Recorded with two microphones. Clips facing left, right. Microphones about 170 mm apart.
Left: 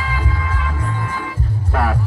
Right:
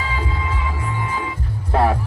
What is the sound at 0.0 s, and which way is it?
Music, 25° right (ahead or behind).